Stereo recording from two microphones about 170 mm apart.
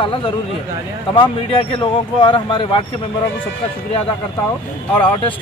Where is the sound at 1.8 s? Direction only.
30° left (ahead or behind).